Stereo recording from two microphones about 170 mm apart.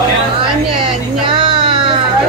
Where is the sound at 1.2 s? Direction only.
30° right (ahead or behind).